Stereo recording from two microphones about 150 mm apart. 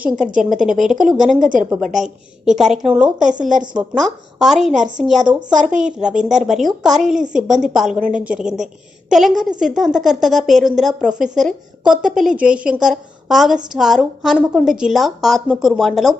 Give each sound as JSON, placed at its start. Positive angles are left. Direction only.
{"t": 0.6, "sound": "a woman's voice", "side_deg": -5}
{"t": 1.4, "sound": "a woman's voice", "side_deg": -60}
{"t": 2.0, "sound": "a woman's voice", "side_deg": 0}